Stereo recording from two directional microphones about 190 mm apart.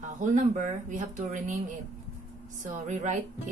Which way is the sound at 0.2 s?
40° right (ahead or behind).